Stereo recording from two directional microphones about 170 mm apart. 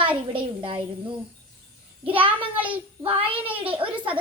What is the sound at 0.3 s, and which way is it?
Speech, 30° right (ahead or behind).